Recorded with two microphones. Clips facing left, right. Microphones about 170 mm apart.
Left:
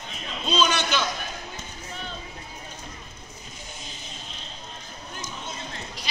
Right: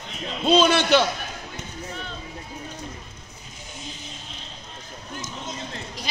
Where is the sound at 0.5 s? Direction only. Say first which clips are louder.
Right 7 dB; 65° right (ahead or behind).